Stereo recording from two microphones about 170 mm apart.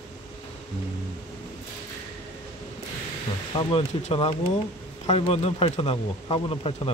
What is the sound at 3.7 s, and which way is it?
Speech, 40° left (ahead or behind).